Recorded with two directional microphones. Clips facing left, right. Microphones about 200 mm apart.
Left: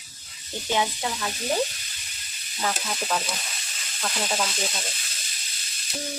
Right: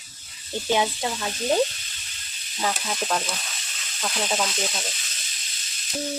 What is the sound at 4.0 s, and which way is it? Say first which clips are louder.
Sizzle: right 2 dB; centre (ahead or behind).